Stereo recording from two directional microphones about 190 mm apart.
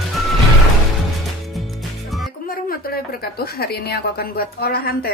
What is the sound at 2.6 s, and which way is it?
A woman's voice, 55° left (ahead or behind).